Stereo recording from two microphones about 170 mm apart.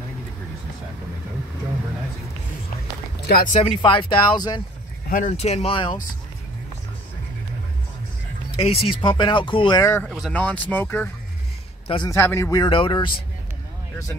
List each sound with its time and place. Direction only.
3.3 s speech: 60° left (ahead or behind)
3.6 s speech: 30° left (ahead or behind)
5.0 s a sound: 55° left (ahead or behind)
5.3 s speech: 40° left (ahead or behind)
8.5 s music: 35° left (ahead or behind)
8.8 s speech: 30° left (ahead or behind)
10.0 s speech: centre (ahead or behind)
12.1 s speech: 15° left (ahead or behind)
12.6 s speech: 30° left (ahead or behind)